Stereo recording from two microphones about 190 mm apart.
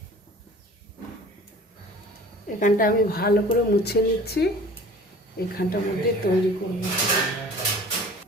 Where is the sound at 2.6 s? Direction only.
45° left (ahead or behind).